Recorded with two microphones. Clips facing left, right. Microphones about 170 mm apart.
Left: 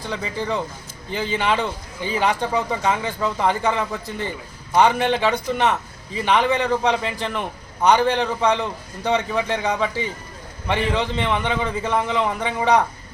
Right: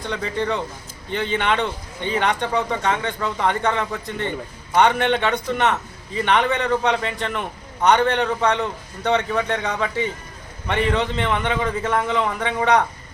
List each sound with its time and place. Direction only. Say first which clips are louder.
0.0 s a man's voice: right 2 dB; centre (ahead or behind)